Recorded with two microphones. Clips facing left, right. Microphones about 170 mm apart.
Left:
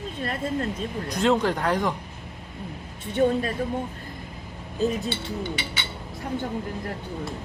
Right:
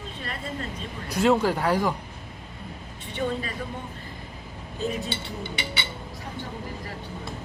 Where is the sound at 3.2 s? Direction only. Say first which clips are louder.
Left 7 dB; 40° left (ahead or behind).